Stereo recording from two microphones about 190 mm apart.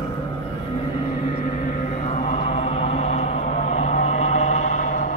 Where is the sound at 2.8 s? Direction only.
30° left (ahead or behind).